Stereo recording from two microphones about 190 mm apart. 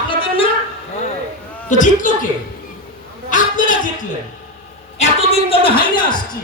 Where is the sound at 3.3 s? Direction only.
45° left (ahead or behind).